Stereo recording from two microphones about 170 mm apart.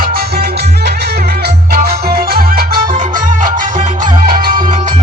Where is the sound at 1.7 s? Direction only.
65° right (ahead or behind).